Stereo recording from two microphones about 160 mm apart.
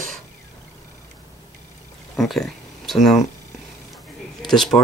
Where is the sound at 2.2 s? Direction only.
Centre (ahead or behind).